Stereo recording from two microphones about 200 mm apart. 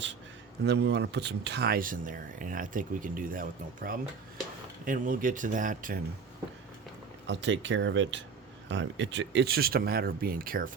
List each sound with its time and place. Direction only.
0.6 s speech: 60° right (ahead or behind); by 6.0 s 40° right (ahead or behind)
7.3 s speech: 65° right (ahead or behind); by 10.7 s 45° right (ahead or behind)